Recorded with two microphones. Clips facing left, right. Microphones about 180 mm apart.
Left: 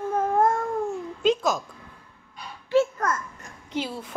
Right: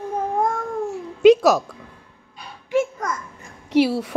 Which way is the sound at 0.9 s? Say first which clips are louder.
Right 14 dB; 80° right.